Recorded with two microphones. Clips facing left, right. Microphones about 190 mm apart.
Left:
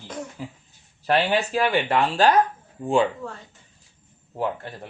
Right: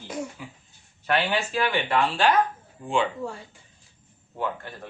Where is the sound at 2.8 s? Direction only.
40° left (ahead or behind).